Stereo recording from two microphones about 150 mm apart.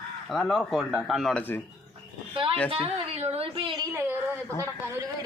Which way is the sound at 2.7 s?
40° right (ahead or behind).